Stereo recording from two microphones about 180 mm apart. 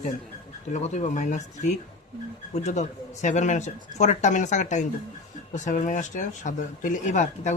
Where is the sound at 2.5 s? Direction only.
40° left (ahead or behind).